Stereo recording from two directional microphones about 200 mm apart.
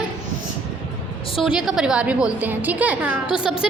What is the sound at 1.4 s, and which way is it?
A woman's voice, 5° right (ahead or behind).